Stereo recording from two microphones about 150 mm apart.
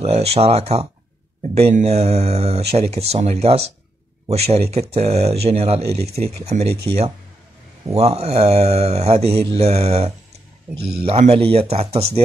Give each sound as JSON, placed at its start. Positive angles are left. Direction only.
{"t": 0.0, "sound": "speech", "side_deg": -45}
{"t": 7.9, "sound": "speech", "side_deg": -45}